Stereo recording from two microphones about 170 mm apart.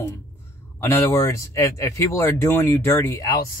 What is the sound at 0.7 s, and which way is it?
Speech, 15° left (ahead or behind).